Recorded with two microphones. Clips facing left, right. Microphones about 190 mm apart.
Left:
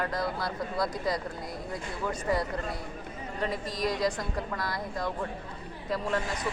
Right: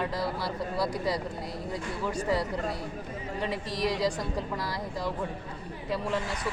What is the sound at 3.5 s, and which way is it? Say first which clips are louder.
Speech: right 1 dB; 80° right.